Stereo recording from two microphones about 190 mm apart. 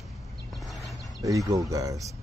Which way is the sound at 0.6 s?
Centre (ahead or behind).